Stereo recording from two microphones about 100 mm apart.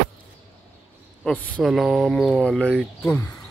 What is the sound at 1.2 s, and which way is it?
Speech, 15° left (ahead or behind).